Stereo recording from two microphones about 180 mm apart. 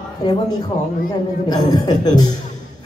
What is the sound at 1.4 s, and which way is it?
Speech, 20° left (ahead or behind).